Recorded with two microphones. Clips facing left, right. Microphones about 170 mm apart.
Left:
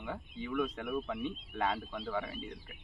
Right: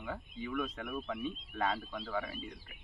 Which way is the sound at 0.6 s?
10° left (ahead or behind).